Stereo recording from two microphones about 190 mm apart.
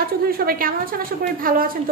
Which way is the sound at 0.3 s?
50° right (ahead or behind).